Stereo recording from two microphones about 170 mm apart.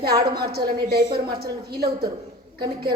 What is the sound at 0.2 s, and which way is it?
Speech, 70° right (ahead or behind).